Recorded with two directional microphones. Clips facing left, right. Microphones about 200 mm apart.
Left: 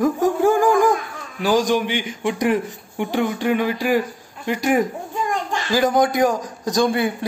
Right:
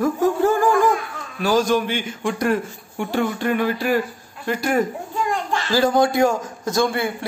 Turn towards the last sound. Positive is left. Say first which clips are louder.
# left 2 dB
turn(degrees=20)  # may be behind; listen again after turning